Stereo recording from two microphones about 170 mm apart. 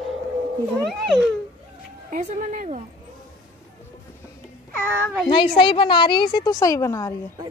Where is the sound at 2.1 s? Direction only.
55° right (ahead or behind).